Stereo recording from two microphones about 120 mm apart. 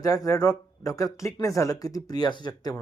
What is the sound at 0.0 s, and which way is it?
Speech, 30° left (ahead or behind).